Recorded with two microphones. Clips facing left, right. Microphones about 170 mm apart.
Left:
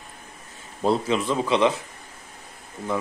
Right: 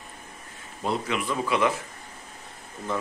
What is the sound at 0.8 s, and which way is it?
Speech, 30° left (ahead or behind).